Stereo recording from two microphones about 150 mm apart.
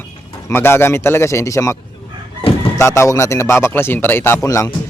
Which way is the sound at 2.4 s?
40° left (ahead or behind).